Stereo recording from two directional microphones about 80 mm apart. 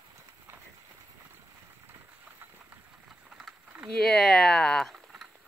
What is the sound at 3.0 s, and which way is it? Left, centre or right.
Vehicle, centre.